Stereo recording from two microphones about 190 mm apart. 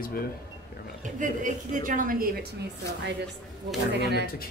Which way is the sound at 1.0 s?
40° right (ahead or behind).